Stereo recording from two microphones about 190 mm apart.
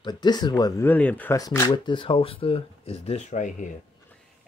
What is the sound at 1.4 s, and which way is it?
Speech, 20° left (ahead or behind).